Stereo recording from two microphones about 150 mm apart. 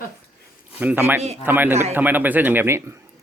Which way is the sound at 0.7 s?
10° right (ahead or behind).